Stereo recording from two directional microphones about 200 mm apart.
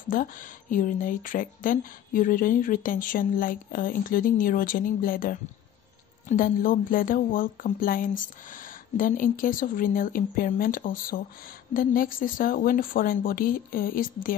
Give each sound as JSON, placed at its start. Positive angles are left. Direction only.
{"t": 0.1, "sound": "speech", "side_deg": 45}